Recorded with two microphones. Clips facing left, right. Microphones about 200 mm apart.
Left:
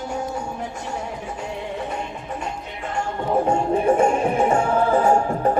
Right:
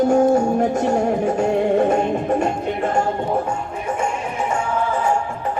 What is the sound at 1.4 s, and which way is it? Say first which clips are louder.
Music: right 13 dB; 55° right (ahead or behind).